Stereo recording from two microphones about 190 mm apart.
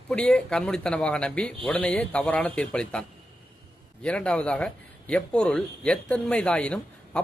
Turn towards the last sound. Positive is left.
turn(degrees=5)  # may be behind; listen again after turning